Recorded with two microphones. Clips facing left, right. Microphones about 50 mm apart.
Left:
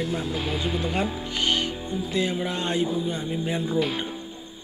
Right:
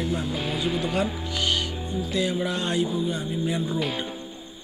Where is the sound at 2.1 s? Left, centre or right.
Left.